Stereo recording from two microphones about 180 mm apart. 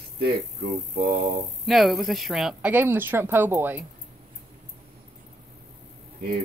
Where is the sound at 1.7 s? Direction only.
Centre (ahead or behind).